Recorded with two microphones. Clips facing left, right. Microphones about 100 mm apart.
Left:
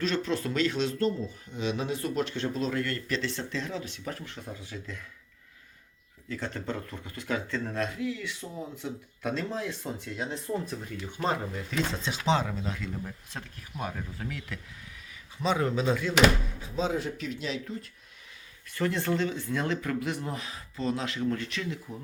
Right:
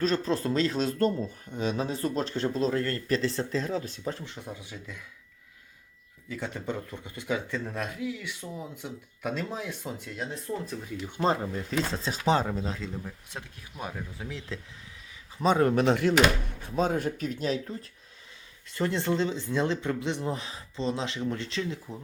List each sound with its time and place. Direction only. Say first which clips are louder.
0.0 s speech: right 2 dB; 40° right (ahead or behind)
4.0 s speech: right 3 dB; 25° right (ahead or behind)
6.2 s speech: even; 10° right (ahead or behind)
10.5 s speech: left 2 dB; 10° left (ahead or behind)
11.2 s speech: right 3 dB; 30° right (ahead or behind)
13.7 s speech: left 1 dB; 10° right (ahead or behind)
15.4 s speech: right 4 dB; 45° right (ahead or behind)
15.8 s speech: right 2 dB; 70° right (ahead or behind); by 17.7 s 40° right (ahead or behind)
18.7 s speech: right 1 dB; 25° right (ahead or behind)